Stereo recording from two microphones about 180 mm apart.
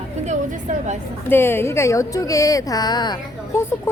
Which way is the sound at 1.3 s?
10° left (ahead or behind).